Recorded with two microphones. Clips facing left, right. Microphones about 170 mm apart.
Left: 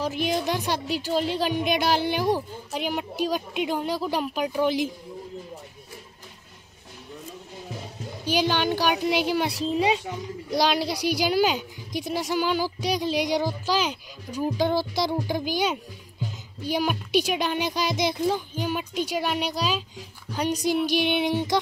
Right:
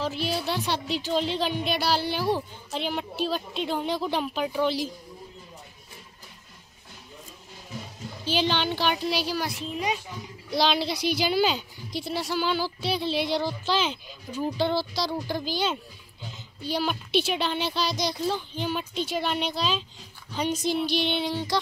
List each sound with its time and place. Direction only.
0.0 s speech: 15° left (ahead or behind)
8.3 s speech: 10° left (ahead or behind)
9.5 s a woman's voice: 30° left (ahead or behind)
10.6 s speech: 10° left (ahead or behind)
16.7 s speech: 10° left (ahead or behind)